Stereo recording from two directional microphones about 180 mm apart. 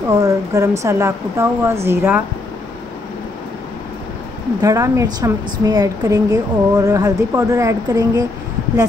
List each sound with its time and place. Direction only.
0.1 s speech: 15° right (ahead or behind)
4.6 s a woman's voice: 20° right (ahead or behind)